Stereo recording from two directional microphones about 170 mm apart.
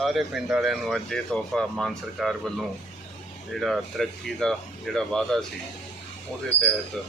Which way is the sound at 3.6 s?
Centre (ahead or behind).